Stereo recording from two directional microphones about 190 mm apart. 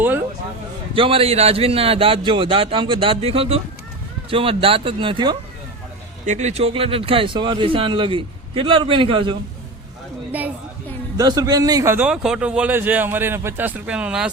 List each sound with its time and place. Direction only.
0.9 s speech: 30° right (ahead or behind)
6.2 s speech: 40° right (ahead or behind)
11.2 s a man's voice: 20° right (ahead or behind); by 14.3 s 5° right (ahead or behind)